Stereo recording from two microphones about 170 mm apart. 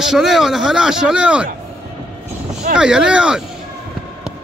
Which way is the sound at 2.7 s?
5° right (ahead or behind).